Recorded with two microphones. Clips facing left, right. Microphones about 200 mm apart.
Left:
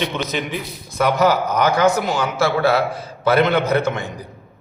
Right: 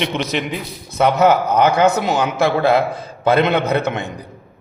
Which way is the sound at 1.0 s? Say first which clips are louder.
Right 3 dB; 25° right (ahead or behind).